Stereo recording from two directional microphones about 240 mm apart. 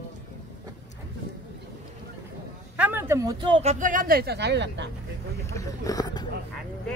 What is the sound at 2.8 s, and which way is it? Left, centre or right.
Speech, centre.